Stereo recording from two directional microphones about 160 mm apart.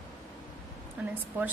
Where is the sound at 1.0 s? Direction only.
10° right (ahead or behind).